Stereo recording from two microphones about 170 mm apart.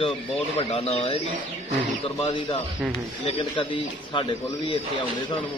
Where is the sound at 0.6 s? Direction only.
35° left (ahead or behind).